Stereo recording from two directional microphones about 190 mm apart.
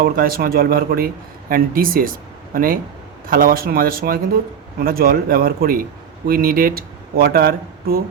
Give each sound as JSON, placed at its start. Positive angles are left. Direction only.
{"t": 0.0, "sound": "speech", "side_deg": -50}